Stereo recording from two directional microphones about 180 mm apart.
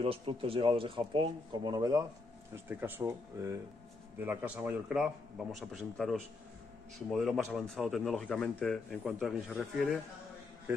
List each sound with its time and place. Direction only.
0.0 s speech: 30° right (ahead or behind); by 9.8 s centre (ahead or behind)